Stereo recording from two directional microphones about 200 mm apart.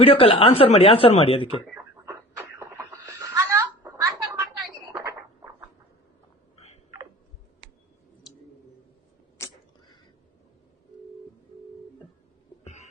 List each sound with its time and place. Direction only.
0.0 s speech: 30° left (ahead or behind)
1.7 s a sound: 15° right (ahead or behind)
12.6 s music: 35° left (ahead or behind)